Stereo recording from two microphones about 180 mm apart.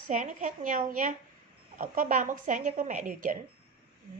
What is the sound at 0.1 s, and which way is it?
Speech, 45° right (ahead or behind).